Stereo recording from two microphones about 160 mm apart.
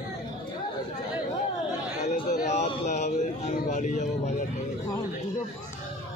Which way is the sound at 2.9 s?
45° left (ahead or behind).